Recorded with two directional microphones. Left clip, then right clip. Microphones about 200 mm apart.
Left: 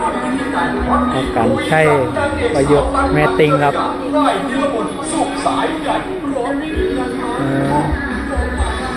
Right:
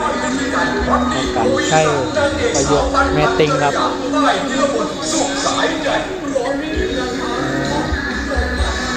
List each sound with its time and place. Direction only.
1.4 s speech: 15° left (ahead or behind)
3.2 s speech: 15° left (ahead or behind)